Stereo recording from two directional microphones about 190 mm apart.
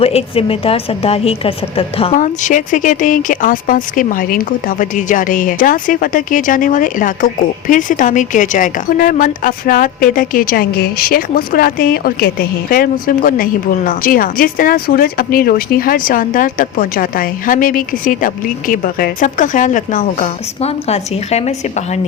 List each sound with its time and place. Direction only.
0.0 s a woman's voice: 30° left (ahead or behind)